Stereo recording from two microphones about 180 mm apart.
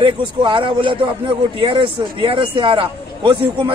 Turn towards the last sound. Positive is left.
turn(degrees=-25)  # may be behind; listen again after turning